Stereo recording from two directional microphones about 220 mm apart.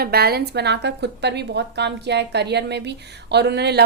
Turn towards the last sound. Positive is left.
turn(degrees=-50)  # may be behind; listen again after turning